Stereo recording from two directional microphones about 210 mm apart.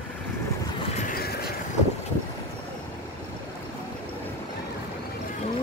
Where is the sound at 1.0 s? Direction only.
45° left (ahead or behind).